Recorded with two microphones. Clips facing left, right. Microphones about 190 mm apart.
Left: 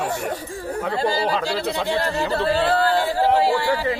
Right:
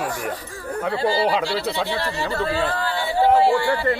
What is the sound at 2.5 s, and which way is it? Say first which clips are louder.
Speech: left 5 dB; 35° left (ahead or behind).